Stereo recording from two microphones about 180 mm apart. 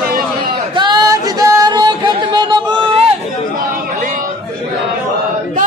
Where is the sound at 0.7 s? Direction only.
25° right (ahead or behind).